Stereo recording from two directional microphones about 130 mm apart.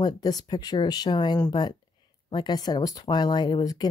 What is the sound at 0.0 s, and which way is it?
Speech, 30° left (ahead or behind).